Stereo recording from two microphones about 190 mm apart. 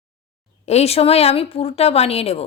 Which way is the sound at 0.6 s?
35° left (ahead or behind).